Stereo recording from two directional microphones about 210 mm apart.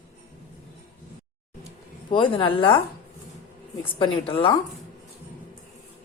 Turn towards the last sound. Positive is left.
turn(degrees=25)  # may be behind; listen again after turning